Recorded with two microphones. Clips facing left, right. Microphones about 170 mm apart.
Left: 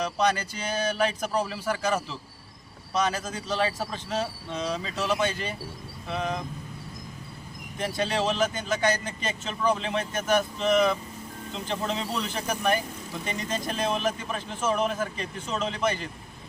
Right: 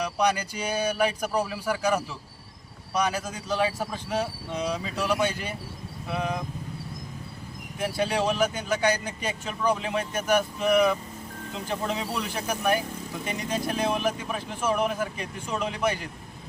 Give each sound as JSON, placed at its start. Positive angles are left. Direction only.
{"t": 0.0, "sound": "speech", "side_deg": -10}
{"t": 7.8, "sound": "speech", "side_deg": -5}